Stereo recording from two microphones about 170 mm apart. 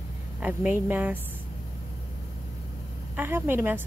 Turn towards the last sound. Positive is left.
turn(degrees=-10)  # may be behind; listen again after turning